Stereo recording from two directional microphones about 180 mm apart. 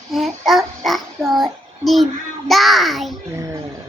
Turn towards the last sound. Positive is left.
turn(degrees=0)  # may be behind; listen again after turning